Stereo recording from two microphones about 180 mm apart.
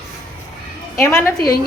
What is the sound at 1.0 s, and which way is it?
Speech, 15° left (ahead or behind).